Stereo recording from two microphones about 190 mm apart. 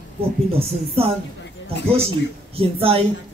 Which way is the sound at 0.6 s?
30° right (ahead or behind).